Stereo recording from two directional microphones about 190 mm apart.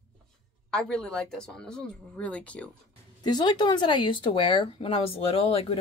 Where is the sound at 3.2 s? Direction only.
20° left (ahead or behind).